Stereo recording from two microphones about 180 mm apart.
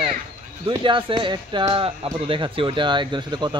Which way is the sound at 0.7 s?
25° right (ahead or behind).